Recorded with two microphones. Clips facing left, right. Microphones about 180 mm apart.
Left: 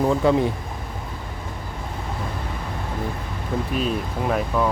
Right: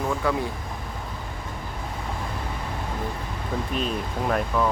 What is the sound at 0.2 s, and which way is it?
Speech, 25° left (ahead or behind).